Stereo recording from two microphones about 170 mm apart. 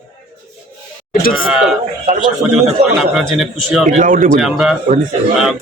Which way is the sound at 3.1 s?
Centre (ahead or behind).